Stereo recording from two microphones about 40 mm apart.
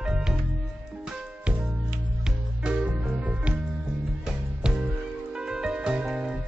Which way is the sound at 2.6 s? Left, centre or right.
Right.